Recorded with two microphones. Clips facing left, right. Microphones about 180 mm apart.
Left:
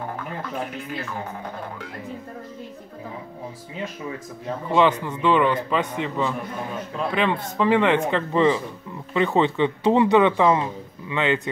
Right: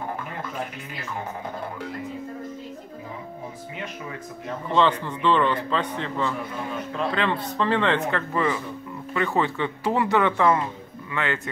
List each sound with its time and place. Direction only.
4.7 s a man's voice: 15° left (ahead or behind)